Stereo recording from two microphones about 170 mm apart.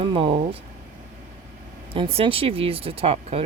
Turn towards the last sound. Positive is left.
turn(degrees=-35)  # may be behind; listen again after turning